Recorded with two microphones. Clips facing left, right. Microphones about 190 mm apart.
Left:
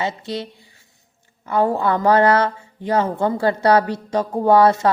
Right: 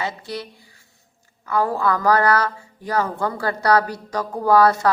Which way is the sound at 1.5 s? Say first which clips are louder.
Left 2 dB; 25° left (ahead or behind).